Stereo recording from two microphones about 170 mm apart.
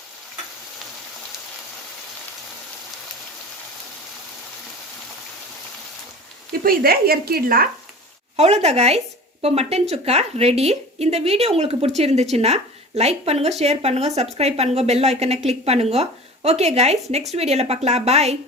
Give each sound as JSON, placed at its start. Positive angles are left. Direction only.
{"t": 6.6, "sound": "speech", "side_deg": -60}
{"t": 8.4, "sound": "a woman's voice", "side_deg": -40}